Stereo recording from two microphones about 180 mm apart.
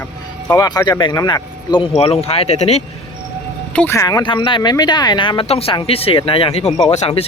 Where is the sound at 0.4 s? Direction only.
20° left (ahead or behind).